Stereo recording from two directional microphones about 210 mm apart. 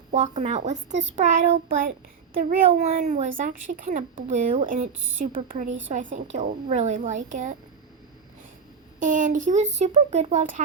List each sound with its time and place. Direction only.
0.1 s speech: 35° right (ahead or behind)
4.9 s speech: 60° right (ahead or behind)
5.5 s speech: 40° right (ahead or behind)
9.0 s speech: 35° right (ahead or behind)